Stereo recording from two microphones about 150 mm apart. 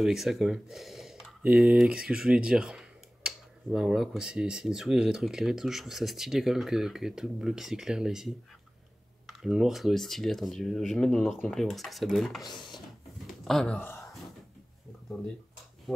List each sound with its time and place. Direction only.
0.0 s speech: 5° right (ahead or behind)
9.4 s speech: centre (ahead or behind)
12.4 s speech: 30° left (ahead or behind)
13.4 s speech: centre (ahead or behind)
13.7 s speech: 15° left (ahead or behind)